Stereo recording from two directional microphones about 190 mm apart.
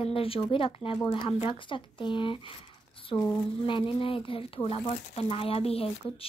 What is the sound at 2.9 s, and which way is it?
Squish, 30° left (ahead or behind).